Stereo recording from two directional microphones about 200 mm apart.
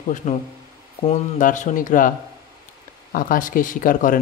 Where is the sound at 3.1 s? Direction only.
45° left (ahead or behind).